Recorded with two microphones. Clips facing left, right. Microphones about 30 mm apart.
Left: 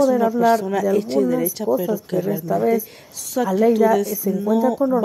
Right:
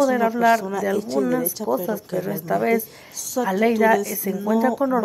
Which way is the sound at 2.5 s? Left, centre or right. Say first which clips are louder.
Left 1 dB; right.